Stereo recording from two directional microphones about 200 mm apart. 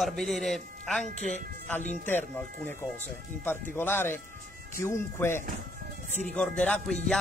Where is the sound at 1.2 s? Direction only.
35° left (ahead or behind).